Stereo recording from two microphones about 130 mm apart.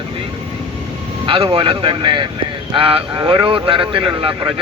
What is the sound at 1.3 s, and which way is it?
Speech, 45° right (ahead or behind).